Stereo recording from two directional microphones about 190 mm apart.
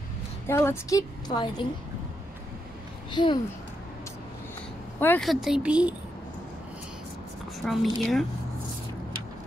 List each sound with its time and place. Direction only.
0.5 s a woman's voice: 15° left (ahead or behind)
3.1 s a child's voice: 25° left (ahead or behind)
5.0 s speech: 5° left (ahead or behind)
7.5 s speech: centre (ahead or behind)